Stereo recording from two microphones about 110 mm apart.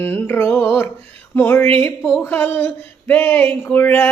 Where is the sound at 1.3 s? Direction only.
15° left (ahead or behind).